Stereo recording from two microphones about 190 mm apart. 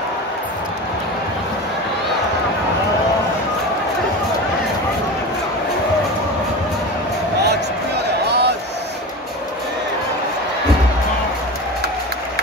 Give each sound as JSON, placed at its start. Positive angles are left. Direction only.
{"t": 7.4, "sound": "music", "side_deg": -60}